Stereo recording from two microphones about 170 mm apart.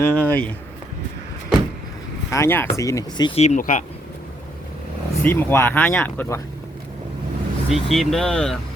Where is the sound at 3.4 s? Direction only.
45° left (ahead or behind).